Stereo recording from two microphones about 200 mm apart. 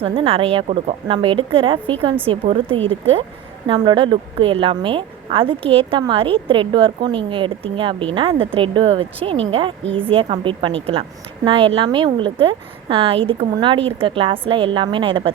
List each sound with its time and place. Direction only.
0.0 s a woman's voice: 30° right (ahead or behind)